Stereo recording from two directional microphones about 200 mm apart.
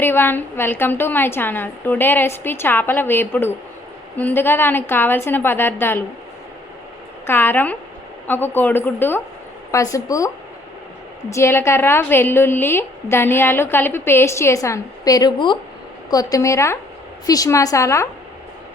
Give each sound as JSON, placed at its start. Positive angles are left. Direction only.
{"t": 0.0, "sound": "a woman's voice", "side_deg": 10}
{"t": 7.3, "sound": "a woman's voice", "side_deg": 10}